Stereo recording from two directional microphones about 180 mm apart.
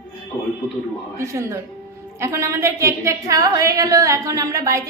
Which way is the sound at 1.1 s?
15° right (ahead or behind).